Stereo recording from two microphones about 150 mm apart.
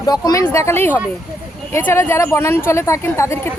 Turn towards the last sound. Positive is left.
turn(degrees=20)  # may be behind; listen again after turning